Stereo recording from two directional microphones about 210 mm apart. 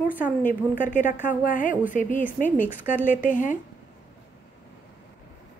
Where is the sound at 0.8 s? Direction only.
35° left (ahead or behind).